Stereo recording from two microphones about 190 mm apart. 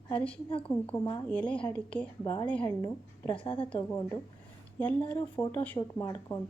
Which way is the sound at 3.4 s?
25° left (ahead or behind).